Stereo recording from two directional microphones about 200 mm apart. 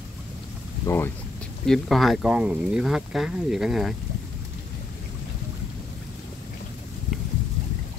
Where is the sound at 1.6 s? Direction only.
Centre (ahead or behind).